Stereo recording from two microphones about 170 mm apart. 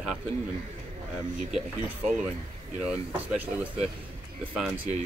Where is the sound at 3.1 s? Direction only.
10° right (ahead or behind).